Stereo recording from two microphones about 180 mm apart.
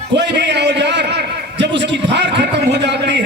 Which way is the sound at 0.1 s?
70° right (ahead or behind).